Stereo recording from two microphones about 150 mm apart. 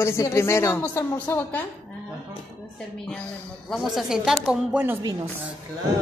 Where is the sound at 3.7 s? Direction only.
Centre (ahead or behind).